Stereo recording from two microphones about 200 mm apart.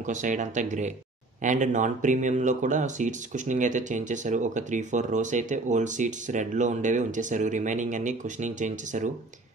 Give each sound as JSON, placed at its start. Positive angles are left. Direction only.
{"t": 0.0, "sound": "speech", "side_deg": -40}